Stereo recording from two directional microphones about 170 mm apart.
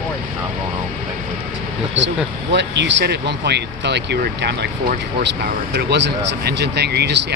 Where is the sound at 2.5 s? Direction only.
90° right.